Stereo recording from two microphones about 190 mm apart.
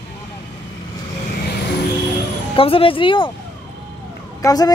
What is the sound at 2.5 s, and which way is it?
Speech, 30° left (ahead or behind).